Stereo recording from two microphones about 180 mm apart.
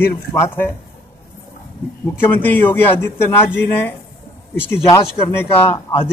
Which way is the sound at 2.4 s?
10° left (ahead or behind).